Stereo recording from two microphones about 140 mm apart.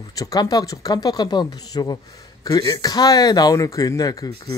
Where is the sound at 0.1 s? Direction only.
25° left (ahead or behind).